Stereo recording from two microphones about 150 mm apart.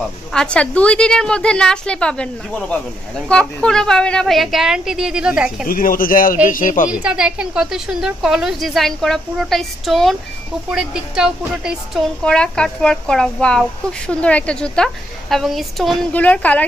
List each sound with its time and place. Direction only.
0.3 s a woman's voice: 5° left (ahead or behind)
3.3 s a woman's voice: 5° left (ahead or behind)
5.7 s speech: 70° left (ahead or behind)
6.9 s a woman's voice: 5° right (ahead or behind); by 16.6 s 10° left (ahead or behind)